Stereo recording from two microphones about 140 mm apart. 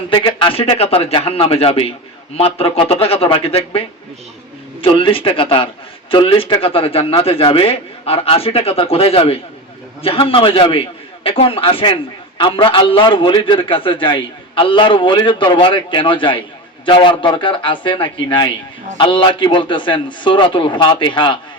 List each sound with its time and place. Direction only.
0.1 s a man's voice: 35° left (ahead or behind)